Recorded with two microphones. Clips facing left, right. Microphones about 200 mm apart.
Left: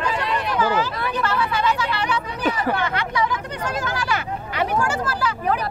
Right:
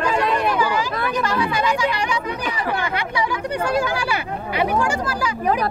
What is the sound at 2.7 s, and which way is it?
Speech, 10° right (ahead or behind).